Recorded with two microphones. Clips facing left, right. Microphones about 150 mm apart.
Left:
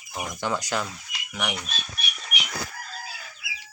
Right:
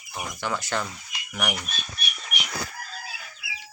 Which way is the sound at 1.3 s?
Centre (ahead or behind).